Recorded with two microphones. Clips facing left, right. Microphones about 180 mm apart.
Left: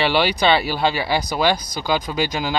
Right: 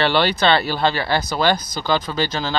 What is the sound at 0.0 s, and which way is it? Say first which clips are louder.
Speech: even; 10° left (ahead or behind).